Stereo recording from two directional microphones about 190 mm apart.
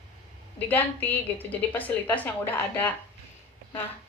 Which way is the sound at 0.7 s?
10° left (ahead or behind).